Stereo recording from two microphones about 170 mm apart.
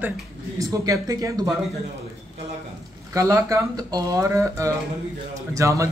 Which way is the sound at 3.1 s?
20° right (ahead or behind).